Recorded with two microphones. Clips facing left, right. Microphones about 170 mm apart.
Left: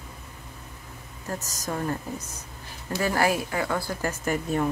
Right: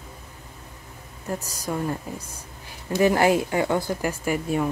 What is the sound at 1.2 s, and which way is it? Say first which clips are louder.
Speech: right 3 dB; 15° right (ahead or behind).